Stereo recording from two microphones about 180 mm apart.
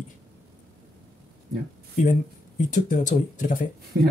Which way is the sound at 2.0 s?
45° left (ahead or behind).